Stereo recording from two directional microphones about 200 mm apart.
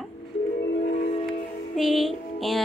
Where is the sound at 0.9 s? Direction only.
35° left (ahead or behind).